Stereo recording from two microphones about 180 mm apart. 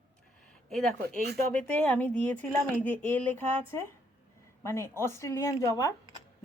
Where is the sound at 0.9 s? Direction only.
55° right (ahead or behind).